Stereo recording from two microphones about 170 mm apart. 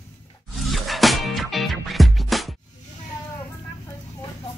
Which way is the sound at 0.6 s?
Centre (ahead or behind).